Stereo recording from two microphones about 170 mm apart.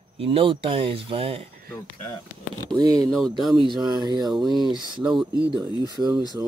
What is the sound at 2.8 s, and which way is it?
Speech, 20° right (ahead or behind).